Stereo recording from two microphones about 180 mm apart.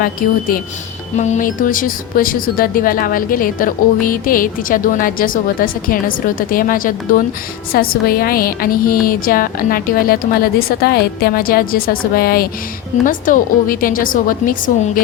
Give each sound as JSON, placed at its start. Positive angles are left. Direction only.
{"t": 0.0, "sound": "speech", "side_deg": 55}